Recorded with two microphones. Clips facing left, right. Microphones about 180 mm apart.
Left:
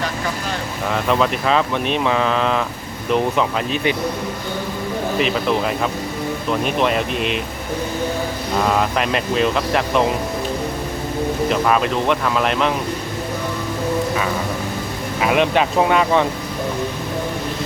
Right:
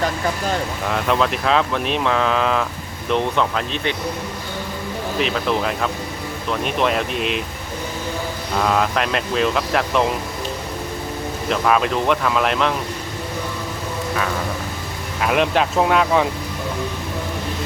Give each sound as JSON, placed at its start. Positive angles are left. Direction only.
{"t": 0.9, "sound": "speech", "side_deg": 0}
{"t": 5.2, "sound": "speech", "side_deg": 0}
{"t": 8.6, "sound": "speech", "side_deg": 0}
{"t": 11.4, "sound": "speech", "side_deg": 0}
{"t": 15.2, "sound": "speech", "side_deg": 0}